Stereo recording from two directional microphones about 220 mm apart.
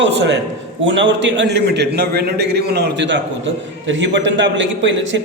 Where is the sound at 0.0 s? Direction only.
55° right (ahead or behind).